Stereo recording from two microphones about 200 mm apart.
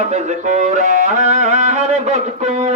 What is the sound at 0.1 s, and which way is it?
Music, 35° right (ahead or behind).